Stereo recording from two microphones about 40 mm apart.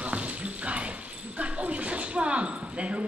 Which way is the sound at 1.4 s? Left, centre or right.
Right.